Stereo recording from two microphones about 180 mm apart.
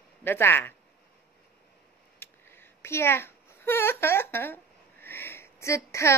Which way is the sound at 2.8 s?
15° left (ahead or behind).